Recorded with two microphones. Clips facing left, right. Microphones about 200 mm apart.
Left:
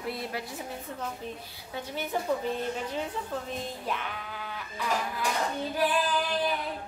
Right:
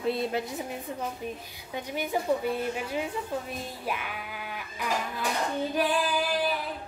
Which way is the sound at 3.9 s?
10° right (ahead or behind).